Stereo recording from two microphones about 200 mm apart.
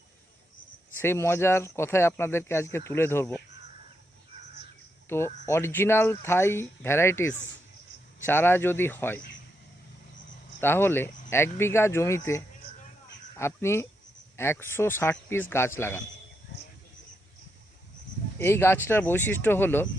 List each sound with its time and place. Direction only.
0.9 s speech: 10° left (ahead or behind)
5.0 s speech: 10° left (ahead or behind)
10.6 s speech: 10° left (ahead or behind)
18.3 s speech: 10° left (ahead or behind)